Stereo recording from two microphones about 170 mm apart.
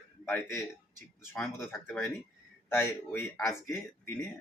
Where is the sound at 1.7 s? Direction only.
15° left (ahead or behind).